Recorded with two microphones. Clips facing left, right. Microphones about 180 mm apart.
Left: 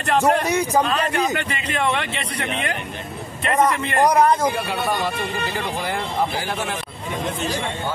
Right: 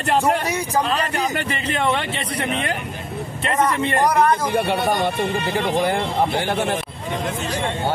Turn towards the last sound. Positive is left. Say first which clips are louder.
# right 3 dB
turn(degrees=-55)  # may be behind; listen again after turning